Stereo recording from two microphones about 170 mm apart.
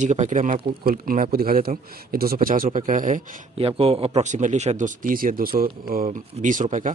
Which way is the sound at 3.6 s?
35° right (ahead or behind).